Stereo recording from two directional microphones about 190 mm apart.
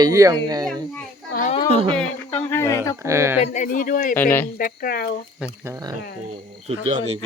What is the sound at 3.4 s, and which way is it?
Speech, 40° left (ahead or behind).